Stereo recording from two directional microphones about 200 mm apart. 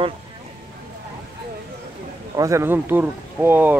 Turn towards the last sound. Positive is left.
turn(degrees=-10)  # may be behind; listen again after turning